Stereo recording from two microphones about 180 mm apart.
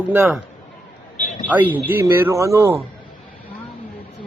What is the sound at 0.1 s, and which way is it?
Speech, 10° right (ahead or behind).